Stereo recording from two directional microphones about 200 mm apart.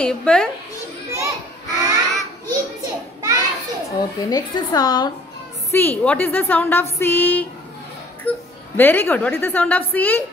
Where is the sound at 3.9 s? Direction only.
20° left (ahead or behind).